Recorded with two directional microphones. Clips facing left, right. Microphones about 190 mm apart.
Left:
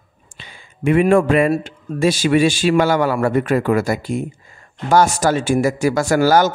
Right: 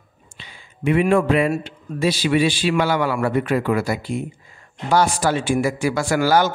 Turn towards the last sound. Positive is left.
turn(degrees=45)  # may be behind; listen again after turning